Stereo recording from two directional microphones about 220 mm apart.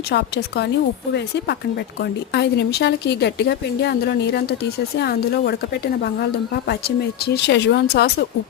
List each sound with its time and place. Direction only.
0.1 s speech: 50° left (ahead or behind)
2.0 s speech: 50° left (ahead or behind)